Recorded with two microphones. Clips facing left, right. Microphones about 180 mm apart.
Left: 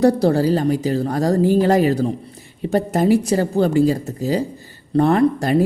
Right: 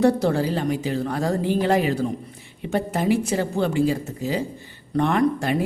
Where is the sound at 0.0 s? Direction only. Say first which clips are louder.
Left 4 dB; 40° left (ahead or behind).